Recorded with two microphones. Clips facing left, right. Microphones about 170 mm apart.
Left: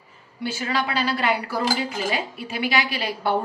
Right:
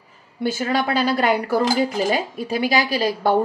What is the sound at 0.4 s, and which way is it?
Speech, 45° right (ahead or behind).